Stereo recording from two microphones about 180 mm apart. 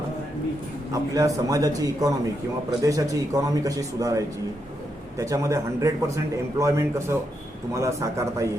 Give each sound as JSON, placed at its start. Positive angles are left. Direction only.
{"t": 1.1, "sound": "a man's voice", "side_deg": -20}